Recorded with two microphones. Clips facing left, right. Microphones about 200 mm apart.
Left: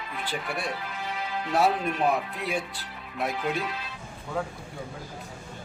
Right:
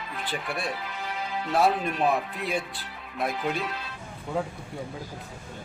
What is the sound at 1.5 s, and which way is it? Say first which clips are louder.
Speech: right 1 dB; 5° left (ahead or behind).